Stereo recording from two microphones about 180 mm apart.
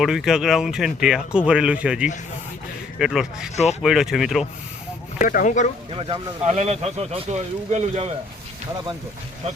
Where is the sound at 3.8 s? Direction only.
Centre (ahead or behind).